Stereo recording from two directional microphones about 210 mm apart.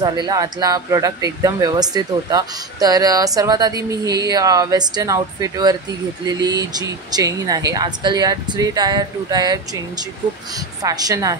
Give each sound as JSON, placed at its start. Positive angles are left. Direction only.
{"t": 0.0, "sound": "speech", "side_deg": -20}
{"t": 10.8, "sound": "speech", "side_deg": -15}